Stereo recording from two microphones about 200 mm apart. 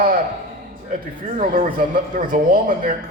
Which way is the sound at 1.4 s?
45° right (ahead or behind).